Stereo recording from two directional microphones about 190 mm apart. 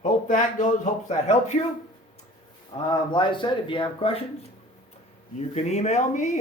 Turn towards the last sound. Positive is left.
turn(degrees=40)  # may be behind; listen again after turning